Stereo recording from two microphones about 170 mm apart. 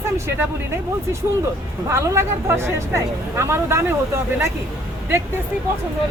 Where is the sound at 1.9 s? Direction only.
15° right (ahead or behind).